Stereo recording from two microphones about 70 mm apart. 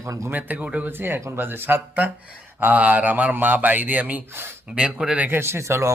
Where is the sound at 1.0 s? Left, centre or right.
Right.